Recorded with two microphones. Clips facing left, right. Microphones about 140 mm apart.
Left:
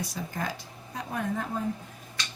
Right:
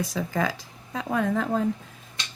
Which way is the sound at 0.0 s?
90° right.